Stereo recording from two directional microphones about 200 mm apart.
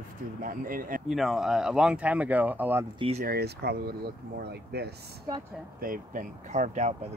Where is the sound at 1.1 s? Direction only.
Centre (ahead or behind).